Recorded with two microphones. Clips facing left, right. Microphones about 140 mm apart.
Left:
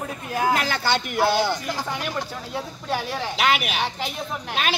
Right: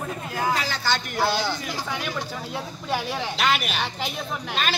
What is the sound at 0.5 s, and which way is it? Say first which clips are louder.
A woman's voice: left 3 dB; 60° left (ahead or behind).